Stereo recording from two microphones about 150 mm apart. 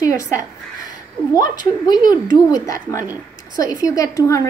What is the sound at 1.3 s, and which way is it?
A woman's voice, 25° left (ahead or behind).